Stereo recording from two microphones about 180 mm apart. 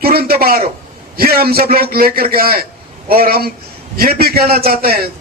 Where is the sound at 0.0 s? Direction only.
55° right (ahead or behind).